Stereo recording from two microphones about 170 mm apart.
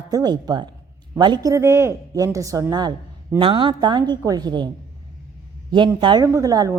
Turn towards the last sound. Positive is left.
turn(degrees=-20)  # may be behind; listen again after turning